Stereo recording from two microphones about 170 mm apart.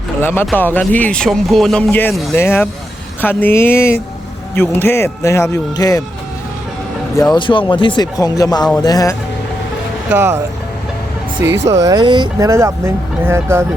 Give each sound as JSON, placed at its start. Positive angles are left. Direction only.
{"t": 0.2, "sound": "speech", "side_deg": 10}
{"t": 7.2, "sound": "speech", "side_deg": 25}
{"t": 10.1, "sound": "speech", "side_deg": -15}
{"t": 11.7, "sound": "speech", "side_deg": -20}